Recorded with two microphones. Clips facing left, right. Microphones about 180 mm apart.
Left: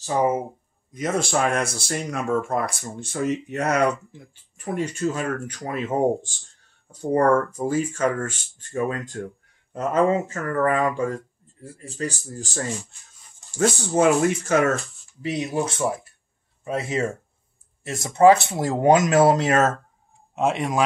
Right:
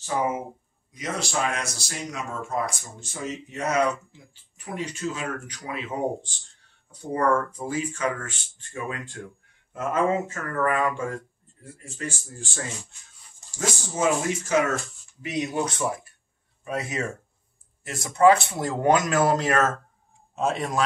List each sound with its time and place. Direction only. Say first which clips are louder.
0.9 s speech: left 6 dB; 50° left (ahead or behind)
4.7 s speech: left 5 dB; 50° left (ahead or behind)
13.6 s speech: left 8 dB; 60° left (ahead or behind)
15.2 s speech: left 2 dB; 30° left (ahead or behind); by 20.8 s 15° left (ahead or behind)